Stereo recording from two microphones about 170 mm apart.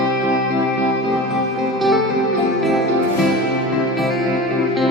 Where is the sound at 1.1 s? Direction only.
Centre (ahead or behind).